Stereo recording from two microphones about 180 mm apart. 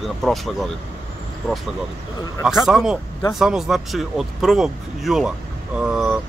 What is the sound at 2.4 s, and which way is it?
Speech, centre (ahead or behind).